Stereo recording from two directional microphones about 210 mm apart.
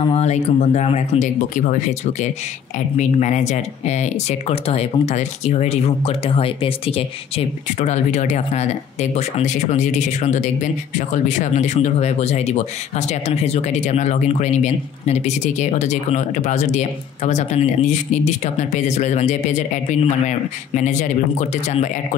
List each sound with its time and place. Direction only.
0.0 s speech: 30° left (ahead or behind)